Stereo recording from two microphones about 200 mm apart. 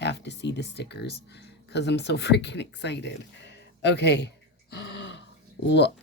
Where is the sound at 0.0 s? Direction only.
60° left (ahead or behind).